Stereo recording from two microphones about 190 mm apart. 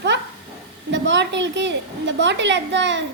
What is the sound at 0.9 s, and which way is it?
A woman's voice, 70° right (ahead or behind).